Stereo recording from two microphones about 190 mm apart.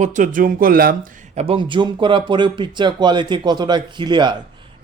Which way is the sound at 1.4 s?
30° right (ahead or behind).